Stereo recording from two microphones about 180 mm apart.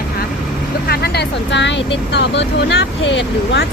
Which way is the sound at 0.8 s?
60° left (ahead or behind).